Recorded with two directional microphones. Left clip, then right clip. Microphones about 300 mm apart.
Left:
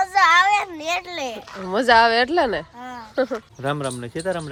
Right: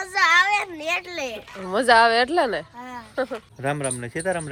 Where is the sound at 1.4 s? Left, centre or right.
Centre.